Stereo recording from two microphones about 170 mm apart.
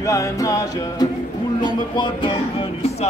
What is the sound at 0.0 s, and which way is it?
Music, 20° left (ahead or behind).